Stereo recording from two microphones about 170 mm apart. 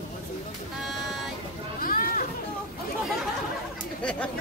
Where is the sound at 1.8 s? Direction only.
55° left (ahead or behind).